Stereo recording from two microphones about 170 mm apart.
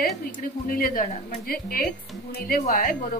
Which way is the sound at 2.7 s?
45° left (ahead or behind).